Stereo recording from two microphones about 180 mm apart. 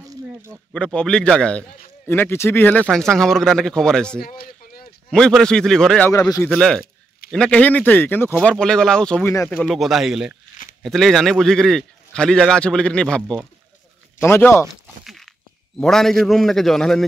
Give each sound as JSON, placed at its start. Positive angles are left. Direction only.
{"t": 0.7, "sound": "a man's voice", "side_deg": 5}
{"t": 4.2, "sound": "a sound", "side_deg": 55}
{"t": 5.1, "sound": "a man's voice", "side_deg": 5}
{"t": 6.1, "sound": "a man's voice", "side_deg": 20}
{"t": 6.5, "sound": "a man's voice", "side_deg": 5}
{"t": 15.0, "sound": "walk", "side_deg": 0}
{"t": 15.8, "sound": "a man's voice", "side_deg": 0}